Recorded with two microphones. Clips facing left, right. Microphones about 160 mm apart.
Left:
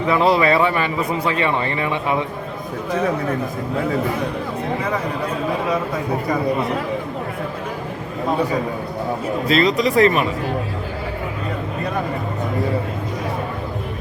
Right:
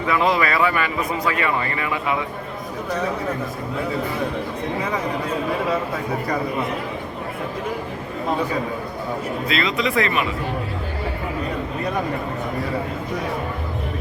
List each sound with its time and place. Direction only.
0.1 s a man's voice: 30° left (ahead or behind)
9.5 s speech: 40° left (ahead or behind)